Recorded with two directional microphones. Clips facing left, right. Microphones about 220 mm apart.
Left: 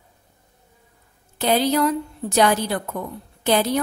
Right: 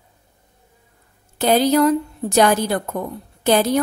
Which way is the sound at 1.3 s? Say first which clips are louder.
Right 4 dB; 45° right (ahead or behind).